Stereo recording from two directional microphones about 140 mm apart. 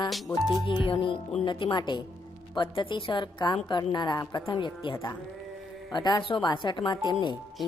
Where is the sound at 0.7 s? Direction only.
40° left (ahead or behind).